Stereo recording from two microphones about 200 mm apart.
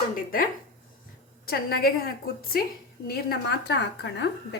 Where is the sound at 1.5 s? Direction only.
50° left (ahead or behind).